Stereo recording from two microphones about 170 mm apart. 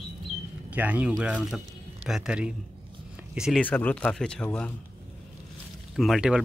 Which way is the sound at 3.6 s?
10° left (ahead or behind).